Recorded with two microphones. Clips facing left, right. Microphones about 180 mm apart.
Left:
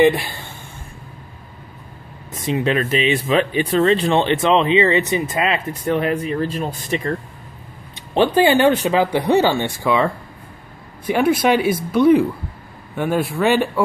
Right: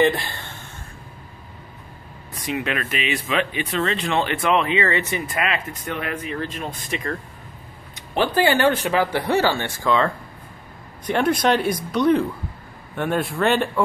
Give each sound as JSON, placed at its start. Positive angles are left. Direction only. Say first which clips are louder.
{"t": 0.0, "sound": "speech", "louder": "left 5 dB", "side_deg": 15}
{"t": 2.4, "sound": "speech", "louder": "left 6 dB", "side_deg": 30}
{"t": 8.1, "sound": "speech", "louder": "left 5 dB", "side_deg": 20}